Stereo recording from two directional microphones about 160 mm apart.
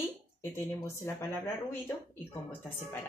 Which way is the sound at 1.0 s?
15° left (ahead or behind).